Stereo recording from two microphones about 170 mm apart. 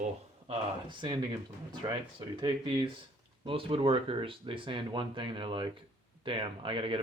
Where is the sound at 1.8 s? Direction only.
25° right (ahead or behind).